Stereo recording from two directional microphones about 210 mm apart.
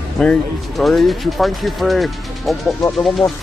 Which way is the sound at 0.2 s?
5° left (ahead or behind).